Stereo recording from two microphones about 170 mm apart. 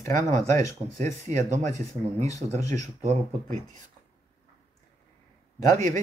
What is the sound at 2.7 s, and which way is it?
Speech, 45° right (ahead or behind).